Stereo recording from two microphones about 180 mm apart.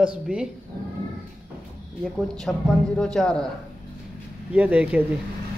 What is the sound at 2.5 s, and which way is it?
Speech, 5° left (ahead or behind).